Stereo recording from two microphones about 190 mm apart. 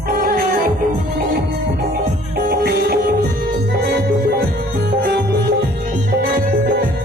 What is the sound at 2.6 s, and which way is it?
Music, 55° right (ahead or behind).